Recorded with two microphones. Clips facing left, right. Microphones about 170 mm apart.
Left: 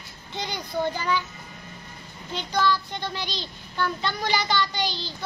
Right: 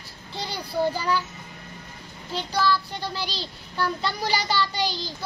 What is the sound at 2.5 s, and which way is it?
Child singing, 5° right (ahead or behind).